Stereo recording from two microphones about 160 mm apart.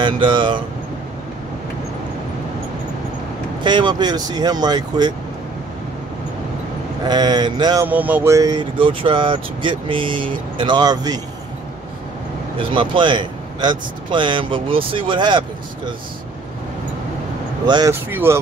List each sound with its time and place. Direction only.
0.0 s speech: 30° right (ahead or behind)
3.6 s speech: 30° right (ahead or behind)
7.1 s speech: 25° right (ahead or behind)
7.8 s speech: 10° right (ahead or behind)
12.5 s speech: 30° right (ahead or behind)
17.6 s speech: 25° right (ahead or behind)
18.1 s speech: 15° right (ahead or behind)